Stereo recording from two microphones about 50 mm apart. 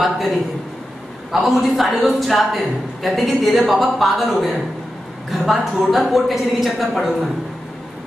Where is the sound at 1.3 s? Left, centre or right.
Centre.